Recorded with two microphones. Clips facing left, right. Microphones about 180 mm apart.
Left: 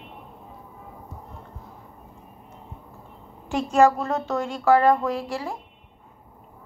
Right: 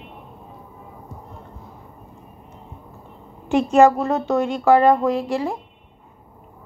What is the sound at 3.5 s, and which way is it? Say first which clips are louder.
A woman's voice: right 4 dB; 20° right (ahead or behind).